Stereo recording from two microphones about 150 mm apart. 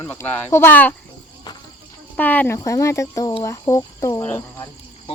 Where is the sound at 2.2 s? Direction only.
10° left (ahead or behind).